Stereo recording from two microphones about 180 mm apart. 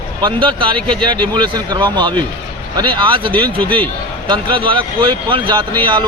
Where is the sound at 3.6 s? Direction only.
10° left (ahead or behind).